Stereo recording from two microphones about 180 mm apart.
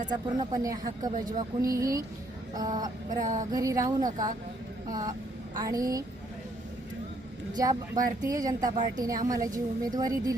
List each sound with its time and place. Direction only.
0.1 s a woman's voice: 20° right (ahead or behind)
3.1 s a sound: 45° right (ahead or behind)
3.5 s a woman's voice: 20° right (ahead or behind)
7.5 s a woman's voice: 20° right (ahead or behind)